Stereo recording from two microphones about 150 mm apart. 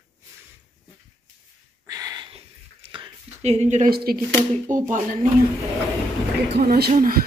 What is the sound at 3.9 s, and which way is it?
Speech, 90° right.